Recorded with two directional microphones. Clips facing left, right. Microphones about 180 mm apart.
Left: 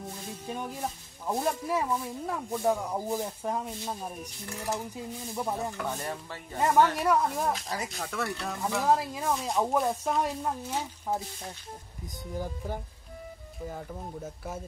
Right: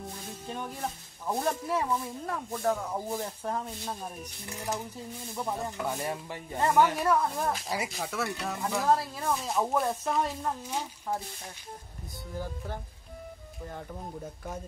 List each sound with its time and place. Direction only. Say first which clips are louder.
0.5 s speech: left 1 dB; 10° left (ahead or behind)
5.8 s rub: right 1 dB; 10° right (ahead or behind)
7.0 s speech: left 1 dB; 10° left (ahead or behind)
7.7 s speech: right 1 dB; 10° right (ahead or behind)
8.6 s speech: left 1 dB; 10° left (ahead or behind)
9.3 s speech: left 1 dB; centre (ahead or behind)
10.7 s speech: left 2 dB; 15° left (ahead or behind)
12.4 s speech: left 2 dB; 10° left (ahead or behind)